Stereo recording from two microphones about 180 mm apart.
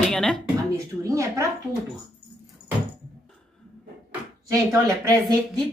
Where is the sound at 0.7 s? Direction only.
15° right (ahead or behind).